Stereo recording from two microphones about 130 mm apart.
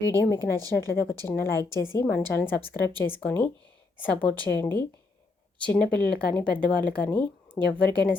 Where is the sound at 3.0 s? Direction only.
15° left (ahead or behind).